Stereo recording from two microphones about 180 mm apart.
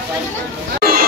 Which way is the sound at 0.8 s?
55° right (ahead or behind).